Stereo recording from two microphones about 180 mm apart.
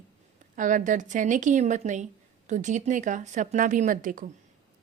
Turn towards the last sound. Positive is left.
turn(degrees=-50)  # may be behind; listen again after turning